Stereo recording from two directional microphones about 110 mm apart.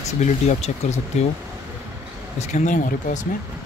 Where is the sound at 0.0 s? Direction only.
90° left.